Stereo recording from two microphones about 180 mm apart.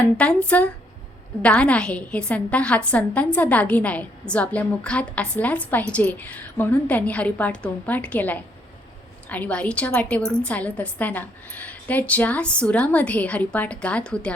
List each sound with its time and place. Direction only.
0.2 s a woman's voice: 5° left (ahead or behind)